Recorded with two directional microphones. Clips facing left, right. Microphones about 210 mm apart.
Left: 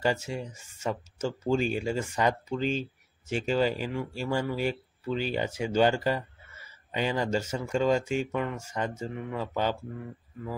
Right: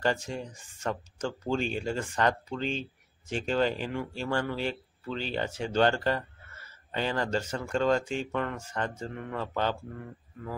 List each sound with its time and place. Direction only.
0.0 s speech: 10° left (ahead or behind)